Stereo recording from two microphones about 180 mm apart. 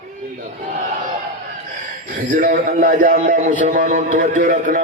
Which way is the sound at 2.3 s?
50° right (ahead or behind).